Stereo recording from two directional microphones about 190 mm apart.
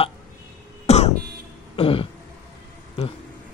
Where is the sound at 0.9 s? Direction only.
35° left (ahead or behind).